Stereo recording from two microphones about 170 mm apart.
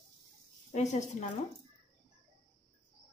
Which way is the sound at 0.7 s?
40° left (ahead or behind).